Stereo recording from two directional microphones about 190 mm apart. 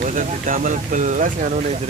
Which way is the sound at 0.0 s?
40° right (ahead or behind).